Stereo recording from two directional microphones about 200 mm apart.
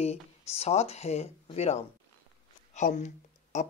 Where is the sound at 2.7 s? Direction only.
35° left (ahead or behind).